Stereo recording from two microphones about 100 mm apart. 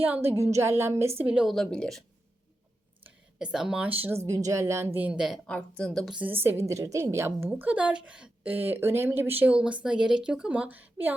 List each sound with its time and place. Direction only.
0.0 s a woman's voice: 20° right (ahead or behind)
1.2 s speech: 10° right (ahead or behind)
1.5 s speech: 5° left (ahead or behind)
3.3 s speech: 5° right (ahead or behind)
3.8 s a woman's voice: 20° right (ahead or behind)
5.5 s speech: 10° left (ahead or behind)
6.1 s a woman's voice: 15° right (ahead or behind)
7.5 s speech: 15° right (ahead or behind)